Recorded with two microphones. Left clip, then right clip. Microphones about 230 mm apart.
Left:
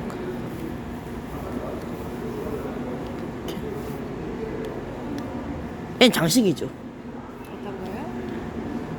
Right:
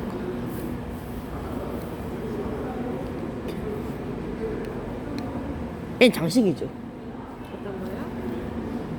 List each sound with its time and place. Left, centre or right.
6.0 s speech: centre
6.2 s speech: left